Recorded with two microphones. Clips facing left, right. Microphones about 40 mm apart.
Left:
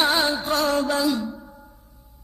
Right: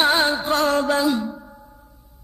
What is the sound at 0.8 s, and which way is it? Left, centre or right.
Mantra, right.